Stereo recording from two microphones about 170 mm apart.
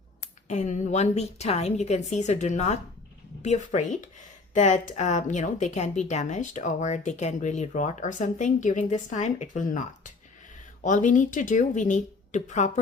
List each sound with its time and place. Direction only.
0.4 s a woman's voice: 45° left (ahead or behind)